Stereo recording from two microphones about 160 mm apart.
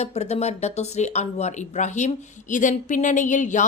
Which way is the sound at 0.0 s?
45° left (ahead or behind).